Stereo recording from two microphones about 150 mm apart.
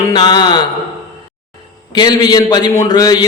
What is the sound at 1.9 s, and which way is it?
A man's voice, 25° left (ahead or behind).